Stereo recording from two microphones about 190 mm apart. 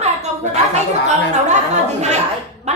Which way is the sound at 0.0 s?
35° right (ahead or behind).